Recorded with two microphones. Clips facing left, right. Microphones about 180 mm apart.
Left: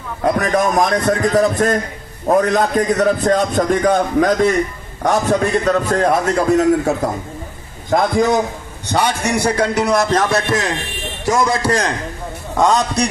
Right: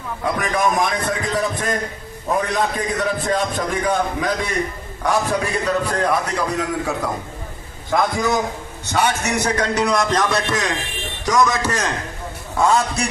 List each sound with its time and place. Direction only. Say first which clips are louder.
0.2 s a man's voice: left 5 dB; 45° left (ahead or behind)
9.2 s speech: left 4 dB; 10° left (ahead or behind)
9.8 s a man's voice: left 3 dB; 25° left (ahead or behind)